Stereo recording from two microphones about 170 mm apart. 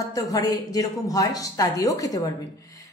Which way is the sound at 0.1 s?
20° left (ahead or behind).